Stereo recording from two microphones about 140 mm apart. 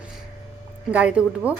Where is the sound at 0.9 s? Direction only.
10° right (ahead or behind).